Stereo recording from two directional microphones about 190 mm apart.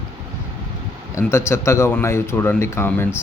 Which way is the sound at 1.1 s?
15° left (ahead or behind).